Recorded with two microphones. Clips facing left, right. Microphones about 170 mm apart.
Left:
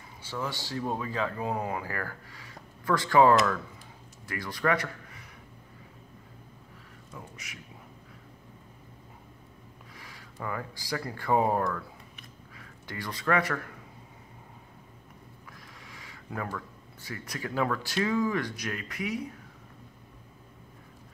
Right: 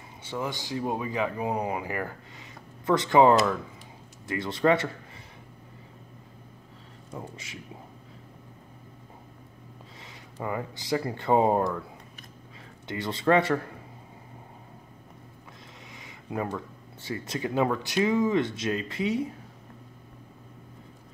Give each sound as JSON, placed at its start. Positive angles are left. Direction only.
{"t": 0.2, "sound": "a man's voice", "side_deg": -20}
{"t": 7.2, "sound": "speech", "side_deg": -25}
{"t": 9.9, "sound": "speech", "side_deg": -20}
{"t": 15.9, "sound": "speech", "side_deg": -20}